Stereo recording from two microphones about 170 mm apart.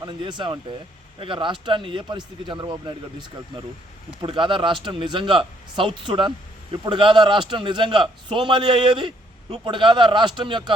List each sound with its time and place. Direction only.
0.0 s a man's voice: 30° right (ahead or behind)